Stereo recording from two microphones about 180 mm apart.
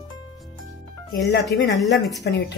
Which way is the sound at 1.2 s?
70° left (ahead or behind).